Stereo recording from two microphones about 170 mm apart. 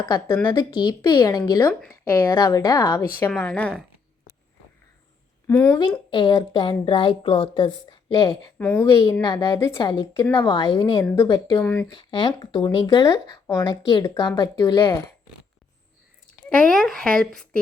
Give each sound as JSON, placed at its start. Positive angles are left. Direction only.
{"t": 0.5, "sound": "a woman's voice", "side_deg": 25}
{"t": 5.5, "sound": "speech", "side_deg": 10}
{"t": 6.1, "sound": "a woman's voice", "side_deg": 30}
{"t": 11.9, "sound": "a woman's voice", "side_deg": 25}
{"t": 16.5, "sound": "speech", "side_deg": 5}